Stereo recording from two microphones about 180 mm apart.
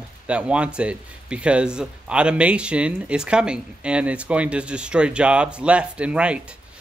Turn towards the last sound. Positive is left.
turn(degrees=-5)  # may be behind; listen again after turning